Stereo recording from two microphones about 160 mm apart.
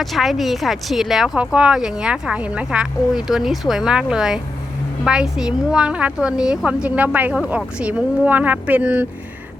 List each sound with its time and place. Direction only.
0.0 s a woman's voice: centre (ahead or behind)